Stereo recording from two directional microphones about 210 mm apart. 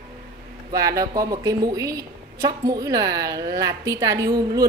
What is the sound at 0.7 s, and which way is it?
A woman's voice, 15° right (ahead or behind).